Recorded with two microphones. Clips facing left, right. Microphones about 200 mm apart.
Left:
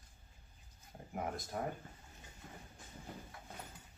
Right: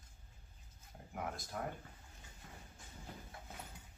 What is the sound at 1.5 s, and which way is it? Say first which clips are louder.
Speech: left 3 dB; 35° left (ahead or behind).